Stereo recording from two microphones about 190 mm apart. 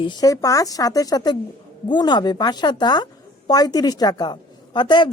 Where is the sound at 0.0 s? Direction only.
20° left (ahead or behind).